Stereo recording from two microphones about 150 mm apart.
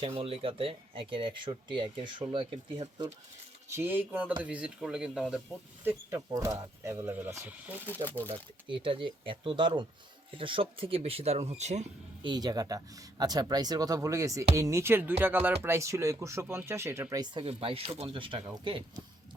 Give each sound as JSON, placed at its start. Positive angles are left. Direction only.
{"t": 0.0, "sound": "speech", "side_deg": -35}
{"t": 3.7, "sound": "speech", "side_deg": -15}
{"t": 5.8, "sound": "speech", "side_deg": -15}
{"t": 8.3, "sound": "speech", "side_deg": -35}
{"t": 12.2, "sound": "speech", "side_deg": -30}
{"t": 17.4, "sound": "speech", "side_deg": -40}